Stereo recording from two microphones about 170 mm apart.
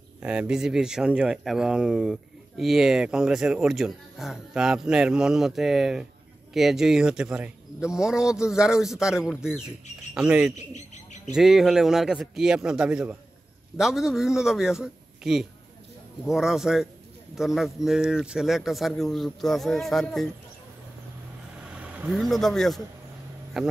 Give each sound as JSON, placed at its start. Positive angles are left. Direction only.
{"t": 0.2, "sound": "speech", "side_deg": -5}
{"t": 10.5, "sound": "speech", "side_deg": 45}
{"t": 11.3, "sound": "speech", "side_deg": 0}
{"t": 21.7, "sound": "speech", "side_deg": -5}